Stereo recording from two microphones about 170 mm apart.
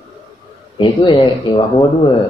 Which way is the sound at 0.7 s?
30° left (ahead or behind).